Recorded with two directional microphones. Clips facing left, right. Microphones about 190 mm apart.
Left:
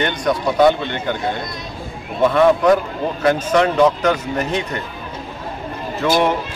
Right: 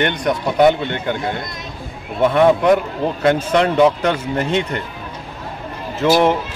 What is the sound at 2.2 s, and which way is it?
Speech, 20° right (ahead or behind).